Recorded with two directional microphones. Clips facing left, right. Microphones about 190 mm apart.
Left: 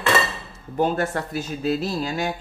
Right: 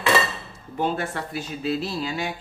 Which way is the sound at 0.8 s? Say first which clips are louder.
Left 4 dB; 45° left (ahead or behind).